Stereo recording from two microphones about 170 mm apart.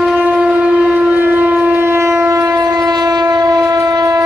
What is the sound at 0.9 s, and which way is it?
Shofar, 10° right (ahead or behind).